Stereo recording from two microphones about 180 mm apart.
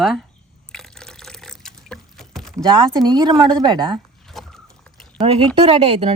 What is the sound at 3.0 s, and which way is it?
Speech, 25° right (ahead or behind).